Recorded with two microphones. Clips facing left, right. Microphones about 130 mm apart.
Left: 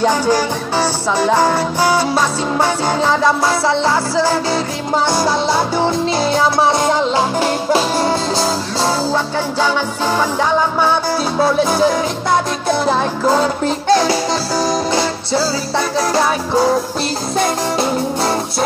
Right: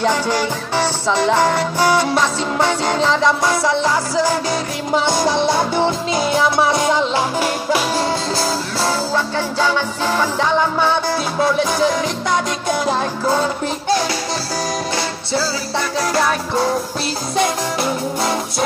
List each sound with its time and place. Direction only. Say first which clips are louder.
0.0 s music: left 3 dB; 30° left (ahead or behind)
5.0 s music: left 3 dB; 20° right (ahead or behind)
6.0 s music: left 2 dB; 30° left (ahead or behind)
11.3 s music: left 3 dB; 30° left (ahead or behind)
14.6 s music: left 6 dB; 30° left (ahead or behind)
17.4 s music: left 2 dB; 30° left (ahead or behind)